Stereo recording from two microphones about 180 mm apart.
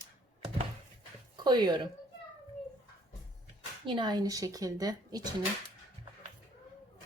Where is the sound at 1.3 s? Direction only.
25° right (ahead or behind).